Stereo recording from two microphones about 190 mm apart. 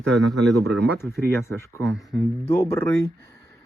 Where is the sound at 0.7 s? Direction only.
15° left (ahead or behind).